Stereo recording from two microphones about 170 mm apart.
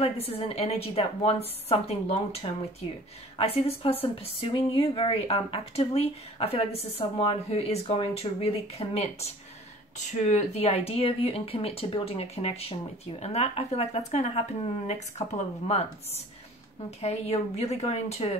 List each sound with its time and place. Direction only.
0.3 s speech: 35° left (ahead or behind)
17.0 s speech: 40° left (ahead or behind)